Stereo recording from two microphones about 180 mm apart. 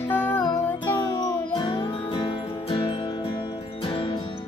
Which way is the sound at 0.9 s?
25° left (ahead or behind).